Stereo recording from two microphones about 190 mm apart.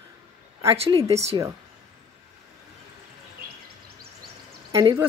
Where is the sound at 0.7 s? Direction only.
30° right (ahead or behind).